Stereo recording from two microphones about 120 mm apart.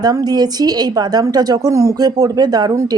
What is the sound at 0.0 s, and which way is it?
A woman's voice, 30° right (ahead or behind).